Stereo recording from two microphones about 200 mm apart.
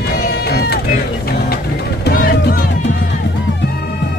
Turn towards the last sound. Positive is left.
turn(degrees=50)  # may be behind; listen again after turning